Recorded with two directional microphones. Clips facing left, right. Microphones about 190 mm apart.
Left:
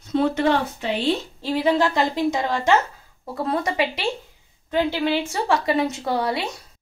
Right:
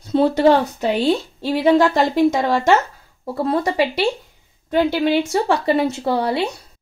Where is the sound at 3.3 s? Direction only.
30° right (ahead or behind).